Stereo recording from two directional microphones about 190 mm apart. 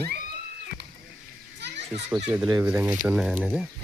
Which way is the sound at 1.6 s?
65° right (ahead or behind).